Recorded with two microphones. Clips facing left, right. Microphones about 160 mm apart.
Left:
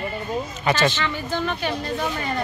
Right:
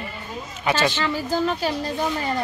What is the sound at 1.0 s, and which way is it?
Speech, 35° right (ahead or behind).